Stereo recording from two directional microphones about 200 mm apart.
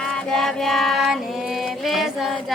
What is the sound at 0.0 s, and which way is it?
Music, centre (ahead or behind).